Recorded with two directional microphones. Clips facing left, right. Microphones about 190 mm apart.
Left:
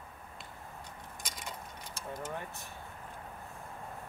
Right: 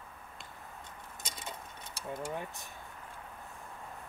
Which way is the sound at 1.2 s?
25° right (ahead or behind).